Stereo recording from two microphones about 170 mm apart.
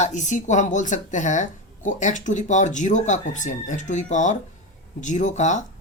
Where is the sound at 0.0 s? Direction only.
45° left (ahead or behind).